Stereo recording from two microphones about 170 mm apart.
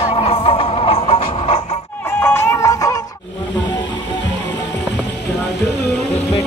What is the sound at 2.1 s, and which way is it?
Music, 15° left (ahead or behind).